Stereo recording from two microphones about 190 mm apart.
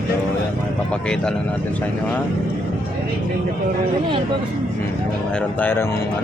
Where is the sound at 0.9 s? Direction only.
5° left (ahead or behind).